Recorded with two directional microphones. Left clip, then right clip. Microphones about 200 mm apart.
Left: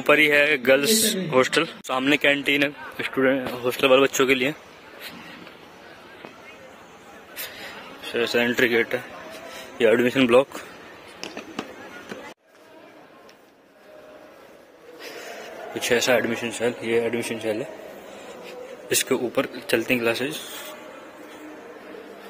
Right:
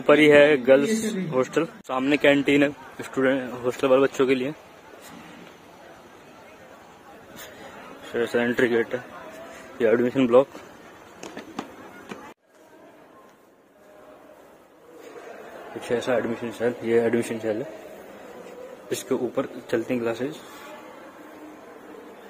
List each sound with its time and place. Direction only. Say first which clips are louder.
0.0 s a man's voice: right 2 dB; 5° right (ahead or behind)
8.1 s a man's voice: left 2 dB; 10° right (ahead or behind)
15.9 s a man's voice: left 4 dB; 5° left (ahead or behind)
16.4 s speech: left 1 dB; 10° right (ahead or behind)
16.8 s speech: right 4 dB; 30° right (ahead or behind)
18.9 s speech: left 3 dB; 5° right (ahead or behind)